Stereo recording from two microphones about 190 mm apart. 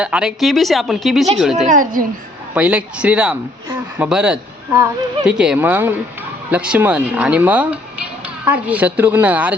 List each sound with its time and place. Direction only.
0.0 s a woman's voice: 5° right (ahead or behind)
1.7 s a child's voice: 45° right (ahead or behind)
2.6 s a woman's voice: 5° right (ahead or behind)